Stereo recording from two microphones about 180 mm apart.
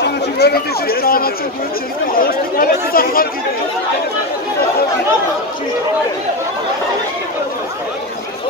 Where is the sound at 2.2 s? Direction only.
55° left (ahead or behind).